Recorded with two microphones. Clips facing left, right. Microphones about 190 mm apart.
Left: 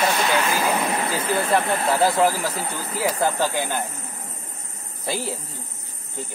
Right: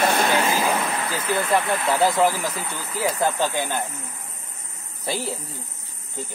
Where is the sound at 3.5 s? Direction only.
15° left (ahead or behind).